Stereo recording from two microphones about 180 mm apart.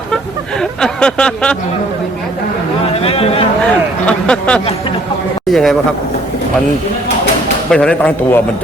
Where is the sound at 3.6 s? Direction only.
5° left (ahead or behind).